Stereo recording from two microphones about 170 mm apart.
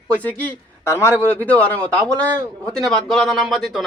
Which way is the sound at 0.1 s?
10° left (ahead or behind).